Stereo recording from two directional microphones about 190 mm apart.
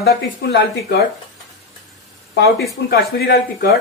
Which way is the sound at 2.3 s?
60° left (ahead or behind).